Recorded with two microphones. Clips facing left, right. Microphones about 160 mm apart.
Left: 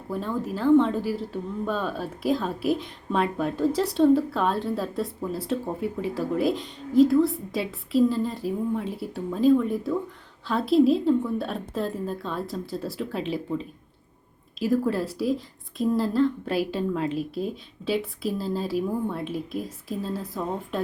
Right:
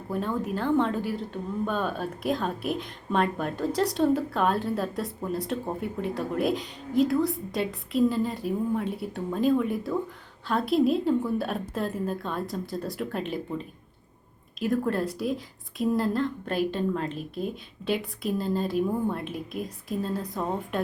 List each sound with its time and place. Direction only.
0.1 s a woman's voice: centre (ahead or behind)
14.6 s a woman's voice: 5° left (ahead or behind)
17.2 s speech: 35° left (ahead or behind)
17.8 s a woman's voice: centre (ahead or behind)